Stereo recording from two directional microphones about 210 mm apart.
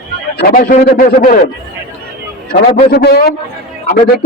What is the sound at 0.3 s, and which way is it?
Speech, 45° left (ahead or behind).